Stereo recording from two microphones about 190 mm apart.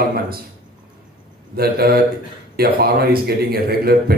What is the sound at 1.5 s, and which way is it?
A man's voice, 55° right (ahead or behind).